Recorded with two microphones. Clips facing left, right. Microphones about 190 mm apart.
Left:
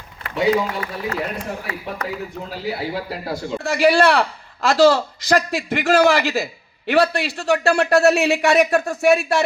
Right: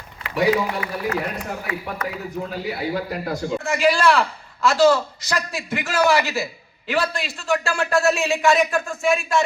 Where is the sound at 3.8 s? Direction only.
65° left (ahead or behind).